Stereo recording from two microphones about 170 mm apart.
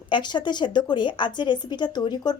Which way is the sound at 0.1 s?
25° left (ahead or behind).